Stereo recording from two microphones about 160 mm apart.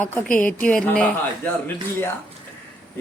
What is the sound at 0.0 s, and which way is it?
A man's voice, 10° left (ahead or behind).